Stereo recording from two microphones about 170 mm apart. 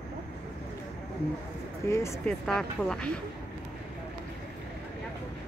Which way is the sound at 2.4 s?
5° left (ahead or behind).